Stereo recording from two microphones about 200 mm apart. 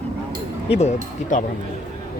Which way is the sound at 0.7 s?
35° left (ahead or behind).